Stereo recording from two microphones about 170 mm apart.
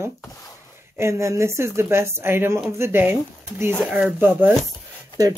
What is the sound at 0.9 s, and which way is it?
Speech, 15° right (ahead or behind).